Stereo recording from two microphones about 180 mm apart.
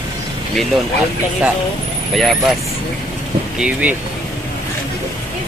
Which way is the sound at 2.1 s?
Centre (ahead or behind).